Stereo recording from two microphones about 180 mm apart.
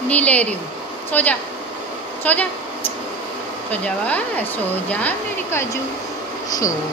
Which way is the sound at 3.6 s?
10° left (ahead or behind).